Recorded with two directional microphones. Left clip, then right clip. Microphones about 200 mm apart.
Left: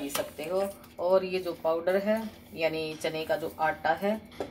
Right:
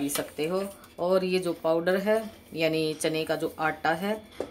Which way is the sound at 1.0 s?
55° right (ahead or behind).